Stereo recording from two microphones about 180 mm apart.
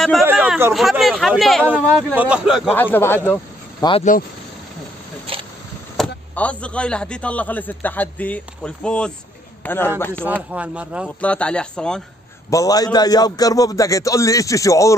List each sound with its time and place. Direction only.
0.2 s a sound: 10° right (ahead or behind)
0.7 s speech: centre (ahead or behind)
2.7 s speech: 10° left (ahead or behind)
3.8 s a man's voice: 20° left (ahead or behind)
5.3 s a sound: 30° right (ahead or behind)
5.9 s speech: 5° left (ahead or behind)
10.5 s speech: 5° right (ahead or behind)
11.1 s speech: 5° left (ahead or behind)
12.4 s a man's voice: 20° left (ahead or behind)